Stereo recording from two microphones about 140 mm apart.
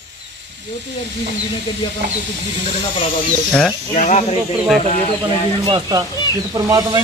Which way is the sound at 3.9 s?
55° left (ahead or behind).